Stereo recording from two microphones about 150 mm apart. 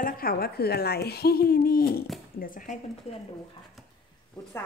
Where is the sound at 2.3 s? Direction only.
70° left (ahead or behind).